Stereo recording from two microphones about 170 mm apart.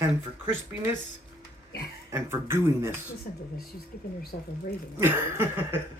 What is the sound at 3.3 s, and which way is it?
Speech, 45° left (ahead or behind).